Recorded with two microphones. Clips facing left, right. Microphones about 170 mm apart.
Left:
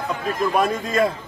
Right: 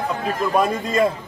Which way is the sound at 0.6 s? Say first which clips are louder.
Right 1 dB; 10° right (ahead or behind).